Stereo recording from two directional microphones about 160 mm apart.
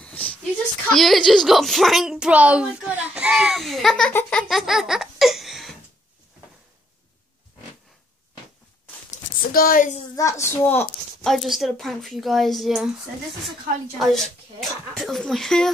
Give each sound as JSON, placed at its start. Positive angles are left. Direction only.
{"t": 0.0, "sound": "speech", "side_deg": 5}
{"t": 4.1, "sound": "a sound", "side_deg": 10}
{"t": 9.1, "sound": "a sound", "side_deg": 60}
{"t": 10.1, "sound": "a woman's voice", "side_deg": 20}
{"t": 11.2, "sound": "speech", "side_deg": 0}
{"t": 13.9, "sound": "speech", "side_deg": 0}